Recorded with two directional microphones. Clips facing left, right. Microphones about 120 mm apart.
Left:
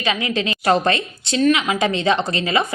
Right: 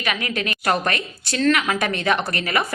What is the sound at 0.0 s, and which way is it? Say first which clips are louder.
A woman's voice: left 4 dB; 25° left (ahead or behind).